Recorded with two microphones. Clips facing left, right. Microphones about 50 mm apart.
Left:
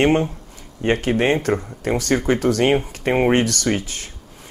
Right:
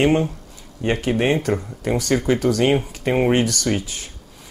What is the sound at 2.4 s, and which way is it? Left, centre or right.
Speech, left.